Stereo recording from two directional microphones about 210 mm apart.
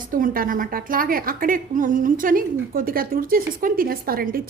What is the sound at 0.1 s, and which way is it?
A woman's voice, 40° right (ahead or behind).